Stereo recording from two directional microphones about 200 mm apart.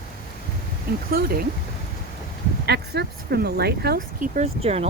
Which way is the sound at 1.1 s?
50° right (ahead or behind).